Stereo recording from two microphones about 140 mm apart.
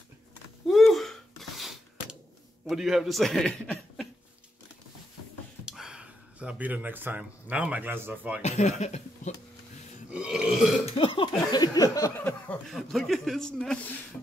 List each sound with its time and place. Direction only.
0.7 s a sound: centre (ahead or behind)
2.7 s speech: centre (ahead or behind)
5.7 s speech: 5° right (ahead or behind)
8.4 s speech: 55° left (ahead or behind)
10.1 s burping: 5° right (ahead or behind)
11.0 s a sound: 40° left (ahead or behind)
12.2 s chuckle: 15° left (ahead or behind)
12.7 s speech: centre (ahead or behind)